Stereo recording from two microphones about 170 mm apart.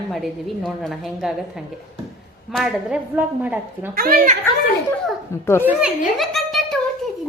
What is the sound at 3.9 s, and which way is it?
Speech, 60° right (ahead or behind).